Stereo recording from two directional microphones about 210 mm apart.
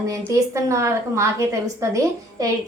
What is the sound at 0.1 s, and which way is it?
A woman's voice, 15° right (ahead or behind).